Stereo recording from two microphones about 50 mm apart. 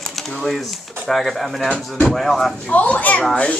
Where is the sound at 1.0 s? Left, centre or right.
Centre.